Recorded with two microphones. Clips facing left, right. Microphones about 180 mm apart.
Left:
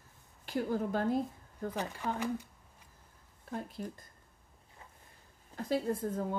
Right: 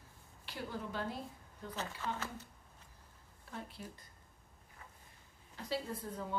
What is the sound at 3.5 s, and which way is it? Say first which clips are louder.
Speech: left 7 dB; 45° left (ahead or behind).